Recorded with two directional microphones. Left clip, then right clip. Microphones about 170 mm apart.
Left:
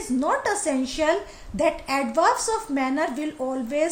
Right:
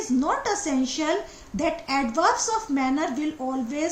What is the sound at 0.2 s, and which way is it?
A woman's voice, 40° left (ahead or behind).